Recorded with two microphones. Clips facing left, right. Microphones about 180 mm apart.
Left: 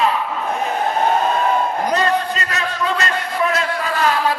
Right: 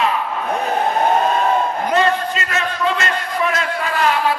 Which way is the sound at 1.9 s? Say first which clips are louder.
Right 3 dB; 40° left (ahead or behind).